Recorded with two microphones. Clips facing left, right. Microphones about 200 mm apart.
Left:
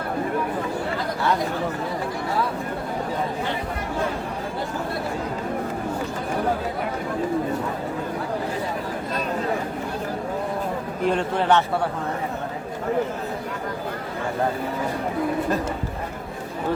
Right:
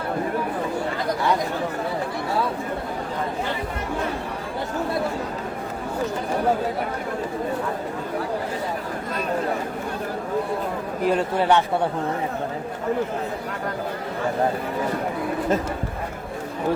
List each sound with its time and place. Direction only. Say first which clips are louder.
11.0 s speech: right 1 dB; 5° right (ahead or behind)